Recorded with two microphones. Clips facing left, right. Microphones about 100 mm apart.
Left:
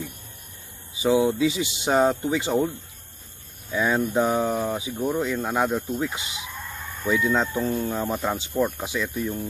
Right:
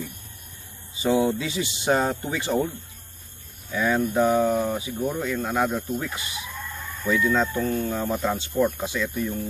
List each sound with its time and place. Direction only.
0.9 s speech: 15° left (ahead or behind)
3.7 s speech: 20° left (ahead or behind)